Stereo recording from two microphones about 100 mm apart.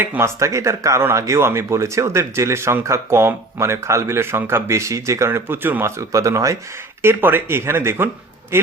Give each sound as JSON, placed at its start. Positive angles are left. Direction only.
{"t": 0.0, "sound": "speech", "side_deg": -20}
{"t": 0.3, "sound": "speech", "side_deg": -30}
{"t": 6.0, "sound": "speech", "side_deg": -35}